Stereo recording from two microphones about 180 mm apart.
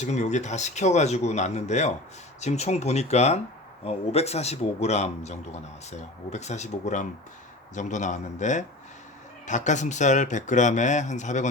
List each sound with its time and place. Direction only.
0.0 s a man's voice: 40° left (ahead or behind)